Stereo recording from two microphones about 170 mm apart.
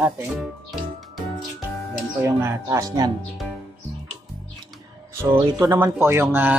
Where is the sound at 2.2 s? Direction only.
20° right (ahead or behind).